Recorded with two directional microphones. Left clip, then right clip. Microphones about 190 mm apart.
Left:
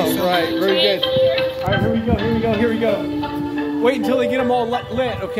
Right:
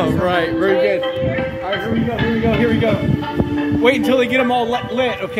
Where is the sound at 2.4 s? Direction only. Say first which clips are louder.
Right 3 dB; 15° right (ahead or behind).